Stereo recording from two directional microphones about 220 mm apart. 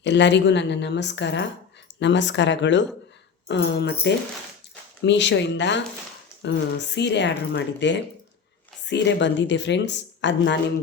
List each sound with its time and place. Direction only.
0.0 s speech: 55° left (ahead or behind)
5.0 s speech: 55° left (ahead or behind)